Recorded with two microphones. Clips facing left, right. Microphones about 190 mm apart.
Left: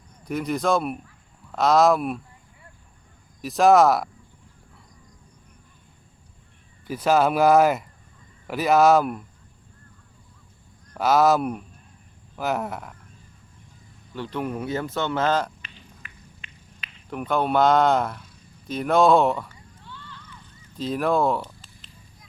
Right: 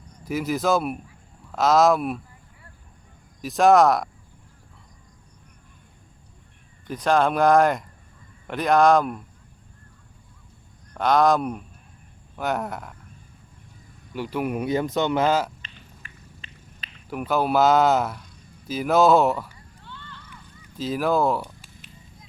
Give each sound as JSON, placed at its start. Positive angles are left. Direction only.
{"t": 0.3, "sound": "speech", "side_deg": -5}
{"t": 3.4, "sound": "speech", "side_deg": 0}
{"t": 6.8, "sound": "speech", "side_deg": 5}
{"t": 10.9, "sound": "speech", "side_deg": 5}
{"t": 14.1, "sound": "speech", "side_deg": -10}
{"t": 15.6, "sound": "a sound", "side_deg": -35}
{"t": 17.1, "sound": "speech", "side_deg": -5}
{"t": 18.7, "sound": "a sound", "side_deg": -5}
{"t": 20.7, "sound": "speech", "side_deg": 0}